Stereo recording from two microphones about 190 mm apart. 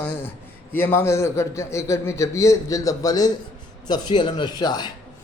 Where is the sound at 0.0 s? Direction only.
10° left (ahead or behind).